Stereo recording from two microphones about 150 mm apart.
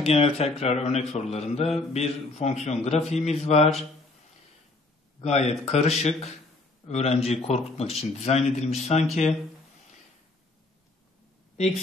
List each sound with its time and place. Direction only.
0.0 s speech: 40° left (ahead or behind)
5.2 s speech: 45° left (ahead or behind)